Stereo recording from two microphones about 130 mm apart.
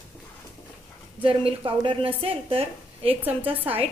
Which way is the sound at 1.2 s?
45° right (ahead or behind).